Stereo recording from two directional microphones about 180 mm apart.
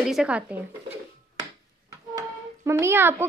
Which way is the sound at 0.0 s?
5° right (ahead or behind).